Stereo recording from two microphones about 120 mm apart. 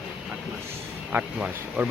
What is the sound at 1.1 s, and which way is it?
Speech, 10° right (ahead or behind).